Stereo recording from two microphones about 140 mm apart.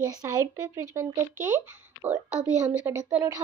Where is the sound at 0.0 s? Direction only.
25° right (ahead or behind); by 2.8 s 5° right (ahead or behind).